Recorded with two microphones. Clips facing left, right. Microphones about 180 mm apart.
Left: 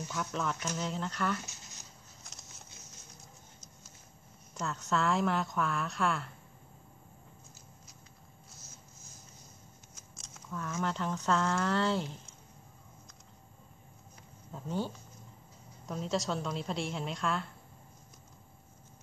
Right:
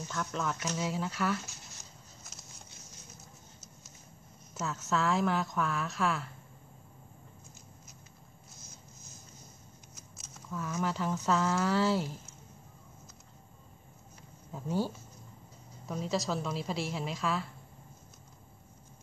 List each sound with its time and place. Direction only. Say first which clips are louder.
0.1 s a woman's voice: right 1 dB; 5° left (ahead or behind)
2.3 s a sound: left 1 dB; 5° right (ahead or behind)
4.6 s a woman's voice: even; 5° right (ahead or behind)
10.1 s speech: right 2 dB; 5° right (ahead or behind)
14.5 s speech: right 3 dB; 5° right (ahead or behind)
15.9 s a woman's voice: right 1 dB; centre (ahead or behind)